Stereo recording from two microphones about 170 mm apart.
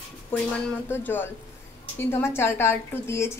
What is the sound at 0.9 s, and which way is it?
A woman's voice, 10° left (ahead or behind).